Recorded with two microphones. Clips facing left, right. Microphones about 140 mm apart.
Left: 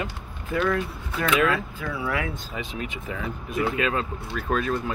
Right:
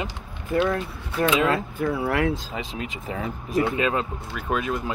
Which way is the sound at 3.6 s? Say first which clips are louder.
Right 1 dB; 20° right (ahead or behind).